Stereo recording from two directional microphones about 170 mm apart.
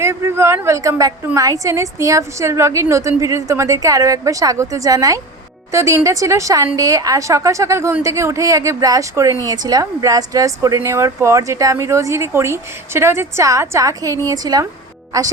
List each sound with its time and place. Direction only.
0.0 s a woman's voice: 15° right (ahead or behind)